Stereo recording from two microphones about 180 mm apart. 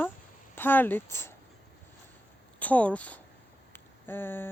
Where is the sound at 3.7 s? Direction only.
10° left (ahead or behind).